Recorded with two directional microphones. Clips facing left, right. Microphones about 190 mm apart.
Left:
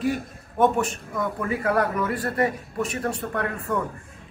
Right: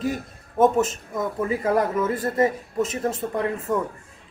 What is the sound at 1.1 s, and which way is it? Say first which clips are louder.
A man's voice: right 2 dB; 20° right (ahead or behind).